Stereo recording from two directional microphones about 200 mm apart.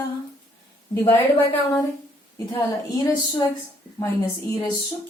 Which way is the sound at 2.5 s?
20° left (ahead or behind).